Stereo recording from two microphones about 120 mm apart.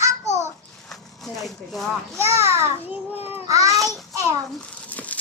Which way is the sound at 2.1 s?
20° right (ahead or behind).